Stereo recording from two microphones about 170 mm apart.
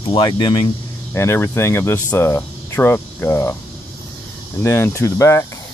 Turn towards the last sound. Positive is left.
turn(degrees=15)  # may be behind; listen again after turning